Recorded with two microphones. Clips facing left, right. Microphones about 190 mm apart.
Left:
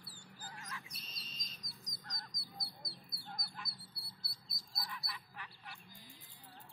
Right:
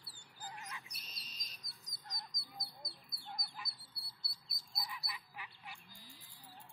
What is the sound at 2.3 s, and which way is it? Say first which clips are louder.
Bird: even; centre (ahead or behind).